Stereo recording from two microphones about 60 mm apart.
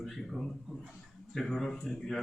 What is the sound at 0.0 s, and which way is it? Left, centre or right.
Speech, centre.